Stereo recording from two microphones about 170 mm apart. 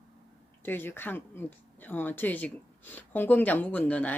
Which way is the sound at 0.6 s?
10° left (ahead or behind).